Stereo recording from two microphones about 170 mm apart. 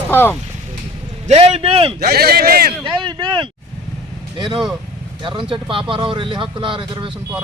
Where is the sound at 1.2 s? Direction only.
40° right (ahead or behind).